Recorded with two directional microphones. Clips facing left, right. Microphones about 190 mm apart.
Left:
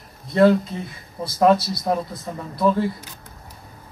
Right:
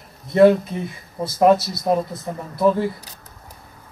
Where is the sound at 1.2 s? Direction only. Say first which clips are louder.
Right 2 dB; 20° right (ahead or behind).